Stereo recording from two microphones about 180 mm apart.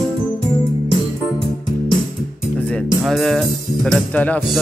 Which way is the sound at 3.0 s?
Centre (ahead or behind).